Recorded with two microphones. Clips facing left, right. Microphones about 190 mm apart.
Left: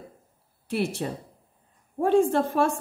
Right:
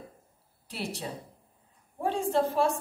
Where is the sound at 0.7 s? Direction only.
55° left (ahead or behind).